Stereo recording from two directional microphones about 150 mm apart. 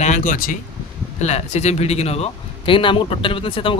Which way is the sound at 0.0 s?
55° left (ahead or behind).